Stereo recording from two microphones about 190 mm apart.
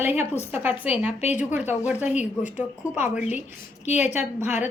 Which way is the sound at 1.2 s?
35° left (ahead or behind).